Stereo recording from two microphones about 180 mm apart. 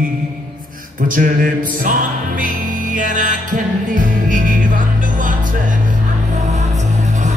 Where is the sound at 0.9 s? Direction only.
50° right (ahead or behind).